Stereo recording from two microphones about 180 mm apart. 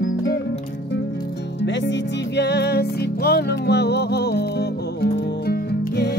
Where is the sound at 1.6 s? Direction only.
80° left.